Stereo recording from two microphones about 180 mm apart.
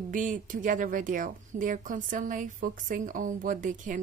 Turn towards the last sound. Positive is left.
turn(degrees=-45)  # may be behind; listen again after turning